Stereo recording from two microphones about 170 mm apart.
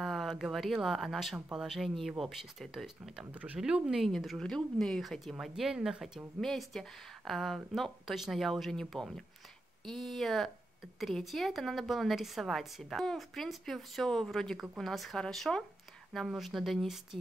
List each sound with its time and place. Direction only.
0.0 s speech: centre (ahead or behind)